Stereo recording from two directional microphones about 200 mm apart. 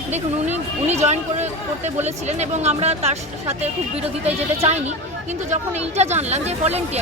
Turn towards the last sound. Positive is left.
turn(degrees=-30)  # may be behind; listen again after turning